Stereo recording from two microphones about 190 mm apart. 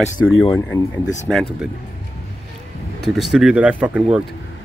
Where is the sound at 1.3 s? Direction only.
Centre (ahead or behind).